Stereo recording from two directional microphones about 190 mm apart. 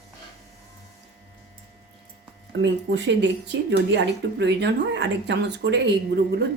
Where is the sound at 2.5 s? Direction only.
70° right (ahead or behind).